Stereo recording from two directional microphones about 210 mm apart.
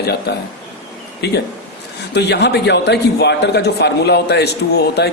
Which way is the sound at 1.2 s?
50° left (ahead or behind).